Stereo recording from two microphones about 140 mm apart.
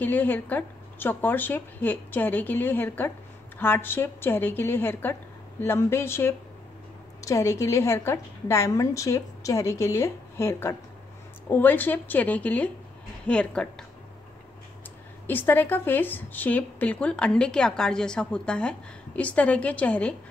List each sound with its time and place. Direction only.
0.0 s a woman's voice: 15° left (ahead or behind)
15.2 s speech: 15° left (ahead or behind)